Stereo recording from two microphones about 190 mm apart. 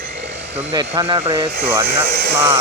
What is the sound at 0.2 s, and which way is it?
Dental drill, 65° right (ahead or behind).